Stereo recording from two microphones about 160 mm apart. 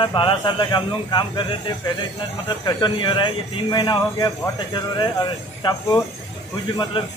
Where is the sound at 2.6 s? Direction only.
30° left (ahead or behind).